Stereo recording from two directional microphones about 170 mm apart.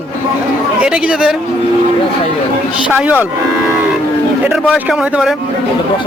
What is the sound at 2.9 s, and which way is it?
Speech, 10° right (ahead or behind).